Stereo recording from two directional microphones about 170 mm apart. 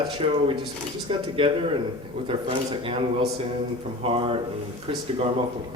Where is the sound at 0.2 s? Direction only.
35° right (ahead or behind).